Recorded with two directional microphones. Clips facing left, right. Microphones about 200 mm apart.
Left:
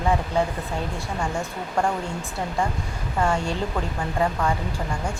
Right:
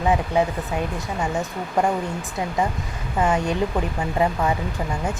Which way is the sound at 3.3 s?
20° right (ahead or behind).